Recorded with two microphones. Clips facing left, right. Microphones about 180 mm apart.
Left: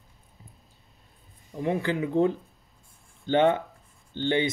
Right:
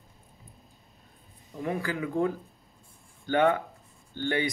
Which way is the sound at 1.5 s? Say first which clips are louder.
Left 4 dB; 25° left (ahead or behind).